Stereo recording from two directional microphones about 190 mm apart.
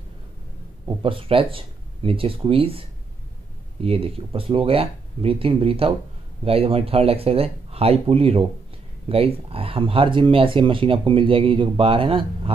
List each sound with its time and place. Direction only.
0.8 s speech: 30° right (ahead or behind)
3.8 s speech: 30° right (ahead or behind)